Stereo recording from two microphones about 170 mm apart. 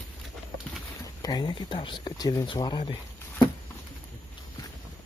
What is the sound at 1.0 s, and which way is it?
Speech, 25° left (ahead or behind).